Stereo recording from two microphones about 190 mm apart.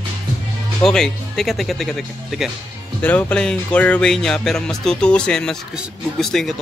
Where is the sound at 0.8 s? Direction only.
5° left (ahead or behind).